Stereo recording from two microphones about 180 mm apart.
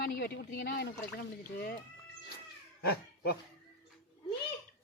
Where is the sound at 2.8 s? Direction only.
60° left (ahead or behind).